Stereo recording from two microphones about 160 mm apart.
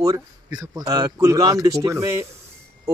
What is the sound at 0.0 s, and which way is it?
Speech, 20° right (ahead or behind).